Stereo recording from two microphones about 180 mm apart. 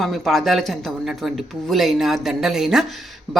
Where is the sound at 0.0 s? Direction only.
Centre (ahead or behind).